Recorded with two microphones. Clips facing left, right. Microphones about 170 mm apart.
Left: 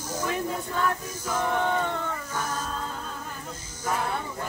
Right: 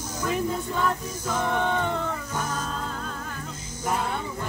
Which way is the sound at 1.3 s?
5° left (ahead or behind).